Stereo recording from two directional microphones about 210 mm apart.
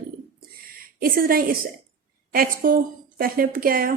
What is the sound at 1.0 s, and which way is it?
Speech, 45° right (ahead or behind).